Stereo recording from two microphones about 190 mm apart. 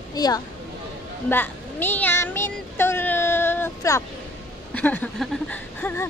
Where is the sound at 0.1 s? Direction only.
20° left (ahead or behind).